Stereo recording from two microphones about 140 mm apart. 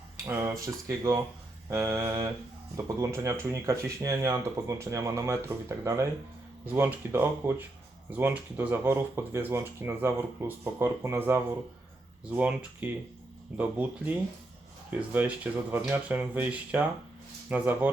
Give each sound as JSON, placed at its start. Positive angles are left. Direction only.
{"t": 0.3, "sound": "speech", "side_deg": -20}